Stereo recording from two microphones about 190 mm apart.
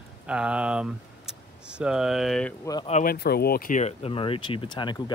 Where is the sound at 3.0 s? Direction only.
55° left (ahead or behind).